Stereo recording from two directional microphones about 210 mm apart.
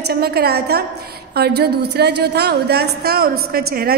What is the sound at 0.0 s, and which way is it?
A woman's voice, 45° right (ahead or behind).